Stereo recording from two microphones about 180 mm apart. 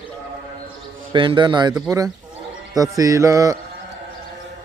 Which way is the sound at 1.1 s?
25° right (ahead or behind).